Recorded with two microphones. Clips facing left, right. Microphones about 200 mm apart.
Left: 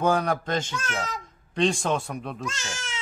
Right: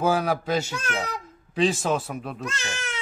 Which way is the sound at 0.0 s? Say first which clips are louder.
Even; 5° right (ahead or behind).